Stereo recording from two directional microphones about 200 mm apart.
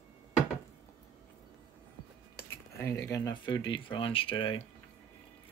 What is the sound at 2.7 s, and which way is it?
Speech, 15° left (ahead or behind).